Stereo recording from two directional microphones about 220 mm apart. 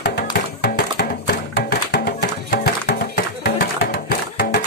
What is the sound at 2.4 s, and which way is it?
Music, 45° left (ahead or behind).